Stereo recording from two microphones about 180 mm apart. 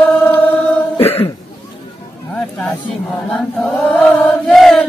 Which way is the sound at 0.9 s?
35° left (ahead or behind).